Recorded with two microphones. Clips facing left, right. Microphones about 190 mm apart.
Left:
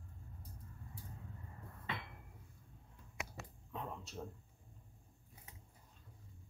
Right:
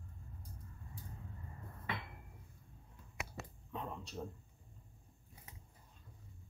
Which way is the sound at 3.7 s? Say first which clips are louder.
Right 2 dB; centre (ahead or behind).